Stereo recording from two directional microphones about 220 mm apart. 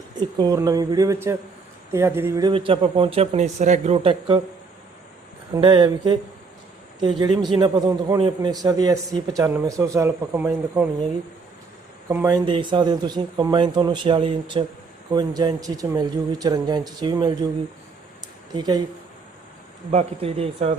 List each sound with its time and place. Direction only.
0.3 s a man's voice: 15° right (ahead or behind)
5.5 s a man's voice: 20° right (ahead or behind)
12.0 s a man's voice: 15° right (ahead or behind)
18.5 s speech: 20° right (ahead or behind)
19.9 s speech: 25° right (ahead or behind)